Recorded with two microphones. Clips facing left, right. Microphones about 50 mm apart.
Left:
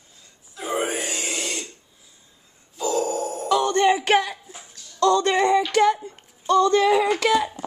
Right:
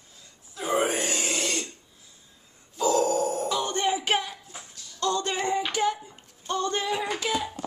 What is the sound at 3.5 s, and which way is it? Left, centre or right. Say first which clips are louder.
Music: left 8 dB; left.